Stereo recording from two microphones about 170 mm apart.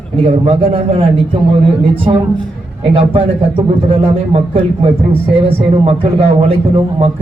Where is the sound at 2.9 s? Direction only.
30° right (ahead or behind).